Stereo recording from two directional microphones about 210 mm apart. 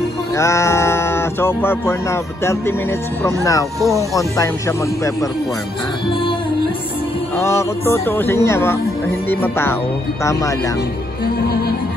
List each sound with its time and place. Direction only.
0.4 s speech: 15° left (ahead or behind)
7.3 s speech: 15° left (ahead or behind)